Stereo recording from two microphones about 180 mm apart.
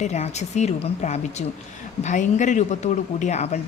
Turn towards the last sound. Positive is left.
turn(degrees=35)  # may be behind; listen again after turning